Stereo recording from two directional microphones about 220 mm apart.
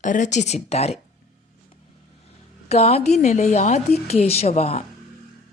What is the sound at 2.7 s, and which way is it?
A woman's voice, 30° left (ahead or behind).